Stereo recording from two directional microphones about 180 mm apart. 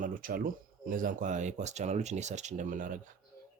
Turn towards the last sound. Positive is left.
turn(degrees=-45)  # may be behind; listen again after turning